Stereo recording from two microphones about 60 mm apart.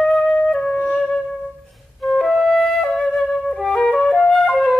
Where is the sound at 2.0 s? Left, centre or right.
Centre.